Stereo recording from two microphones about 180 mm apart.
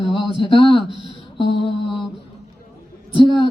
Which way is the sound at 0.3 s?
30° left (ahead or behind).